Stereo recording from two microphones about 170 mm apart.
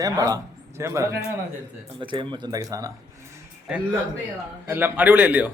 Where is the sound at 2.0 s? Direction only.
30° right (ahead or behind).